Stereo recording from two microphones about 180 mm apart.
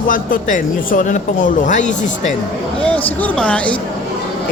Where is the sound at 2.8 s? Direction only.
10° left (ahead or behind).